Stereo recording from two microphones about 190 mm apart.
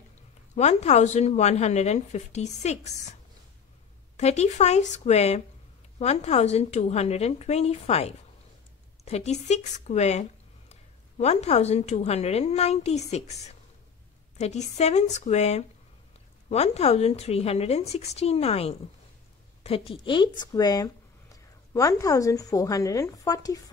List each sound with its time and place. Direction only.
0.6 s a woman's voice: 35° left (ahead or behind)
4.2 s a woman's voice: 35° left (ahead or behind); by 23.6 s 20° left (ahead or behind)